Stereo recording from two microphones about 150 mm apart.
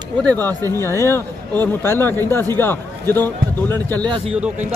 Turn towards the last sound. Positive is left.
turn(degrees=10)  # may be behind; listen again after turning